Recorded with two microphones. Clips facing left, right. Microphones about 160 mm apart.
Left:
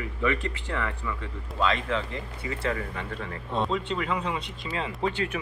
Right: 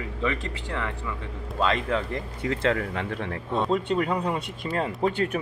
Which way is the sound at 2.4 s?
65° right (ahead or behind).